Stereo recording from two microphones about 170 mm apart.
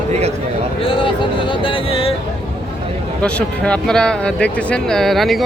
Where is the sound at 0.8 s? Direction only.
30° left (ahead or behind).